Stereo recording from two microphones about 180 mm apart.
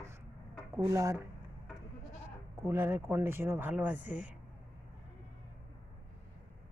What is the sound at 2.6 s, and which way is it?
Speech, 10° right (ahead or behind).